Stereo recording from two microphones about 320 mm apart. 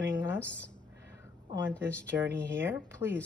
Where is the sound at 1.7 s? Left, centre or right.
Centre.